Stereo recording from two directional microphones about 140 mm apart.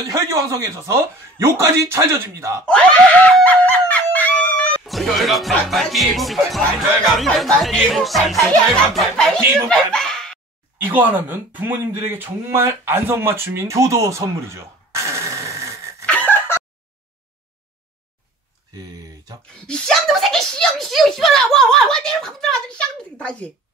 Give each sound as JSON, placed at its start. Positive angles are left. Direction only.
{"t": 0.0, "sound": "speech", "side_deg": -25}
{"t": 2.6, "sound": "screaming", "side_deg": 10}
{"t": 7.1, "sound": "a child's voice", "side_deg": 0}
{"t": 9.4, "sound": "speech", "side_deg": -20}
{"t": 9.7, "sound": "a sound", "side_deg": 5}
{"t": 10.8, "sound": "speech", "side_deg": -10}
{"t": 16.1, "sound": "chicken", "side_deg": 10}
{"t": 19.5, "sound": "a child's voice", "side_deg": 5}